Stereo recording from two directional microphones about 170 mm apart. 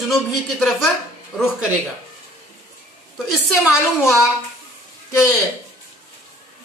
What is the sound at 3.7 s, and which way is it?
Speech, 15° left (ahead or behind).